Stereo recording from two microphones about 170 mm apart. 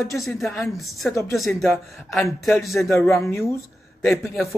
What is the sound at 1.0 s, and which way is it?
Speech, 15° left (ahead or behind).